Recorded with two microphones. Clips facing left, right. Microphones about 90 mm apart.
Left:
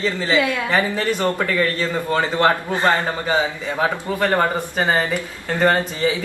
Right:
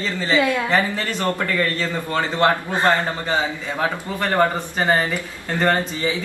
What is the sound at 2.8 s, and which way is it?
Speech, 20° left (ahead or behind).